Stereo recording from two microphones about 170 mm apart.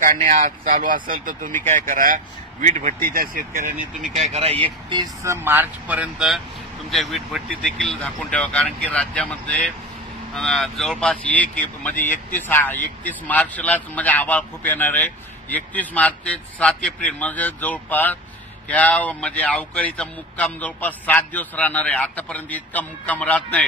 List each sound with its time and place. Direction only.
0.0 s speech: 50° right (ahead or behind)
4.1 s speech: 40° right (ahead or behind)
5.2 s speech: 15° right (ahead or behind); by 23.6 s 10° left (ahead or behind)